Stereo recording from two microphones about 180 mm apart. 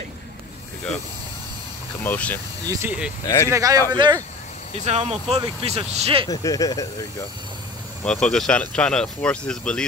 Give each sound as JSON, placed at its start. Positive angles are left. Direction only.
{"t": 2.0, "sound": "speech", "side_deg": 10}
{"t": 2.6, "sound": "speech", "side_deg": -15}
{"t": 4.7, "sound": "speech", "side_deg": -40}
{"t": 6.2, "sound": "speech", "side_deg": 20}
{"t": 8.0, "sound": "speech", "side_deg": 5}